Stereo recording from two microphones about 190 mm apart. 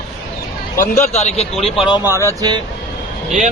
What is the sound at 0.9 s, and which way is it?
Speech, 40° left (ahead or behind).